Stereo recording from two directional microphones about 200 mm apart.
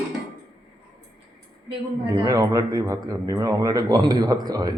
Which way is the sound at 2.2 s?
15° right (ahead or behind).